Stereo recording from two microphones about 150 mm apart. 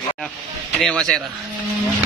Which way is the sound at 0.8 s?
5° left (ahead or behind).